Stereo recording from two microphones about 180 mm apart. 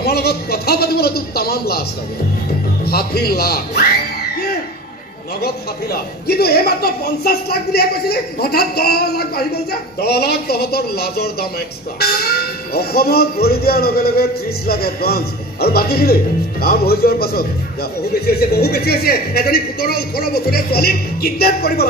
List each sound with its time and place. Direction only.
0.0 s a man's voice: 60° left (ahead or behind)
5.4 s a man's voice: 60° left (ahead or behind)